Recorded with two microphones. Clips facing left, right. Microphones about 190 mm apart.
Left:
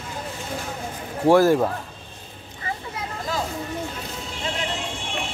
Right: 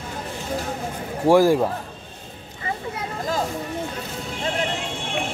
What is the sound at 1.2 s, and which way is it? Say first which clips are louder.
Speech: even; 10° right (ahead or behind).